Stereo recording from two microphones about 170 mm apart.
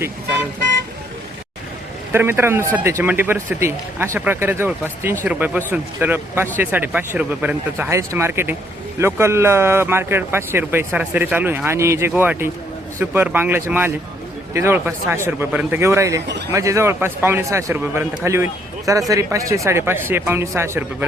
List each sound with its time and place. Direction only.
2.1 s speech: 15° right (ahead or behind)